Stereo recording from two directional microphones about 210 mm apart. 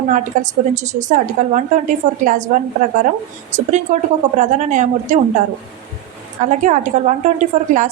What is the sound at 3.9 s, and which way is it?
A woman's voice, 35° right (ahead or behind).